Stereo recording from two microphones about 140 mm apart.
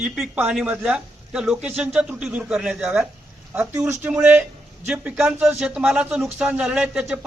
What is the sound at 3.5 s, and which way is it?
Speech, 15° right (ahead or behind).